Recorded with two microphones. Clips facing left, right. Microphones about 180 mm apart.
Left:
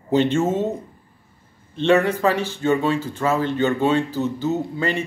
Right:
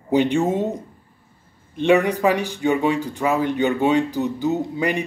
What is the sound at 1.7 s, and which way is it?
Speech, 15° right (ahead or behind).